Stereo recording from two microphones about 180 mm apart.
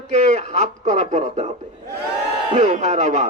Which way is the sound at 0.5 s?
40° right (ahead or behind).